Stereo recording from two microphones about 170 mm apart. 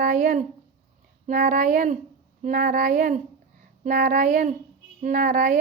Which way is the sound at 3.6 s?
55° right (ahead or behind).